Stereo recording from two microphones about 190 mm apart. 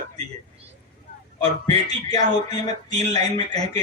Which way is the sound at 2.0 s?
20° left (ahead or behind).